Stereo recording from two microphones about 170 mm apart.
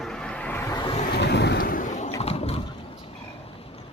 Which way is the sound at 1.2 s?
80° left.